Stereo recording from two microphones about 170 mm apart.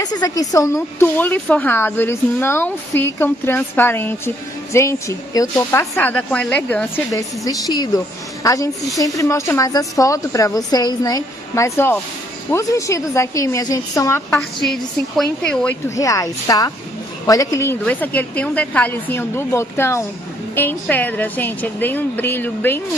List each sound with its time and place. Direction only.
0.0 s a woman's voice: 25° left (ahead or behind)
7.1 s a woman's voice: 20° left (ahead or behind)
14.6 s a woman's voice: centre (ahead or behind)
16.0 s a woman's voice: 20° left (ahead or behind)